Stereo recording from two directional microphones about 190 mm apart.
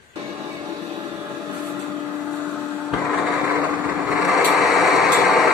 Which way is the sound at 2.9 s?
Centre (ahead or behind).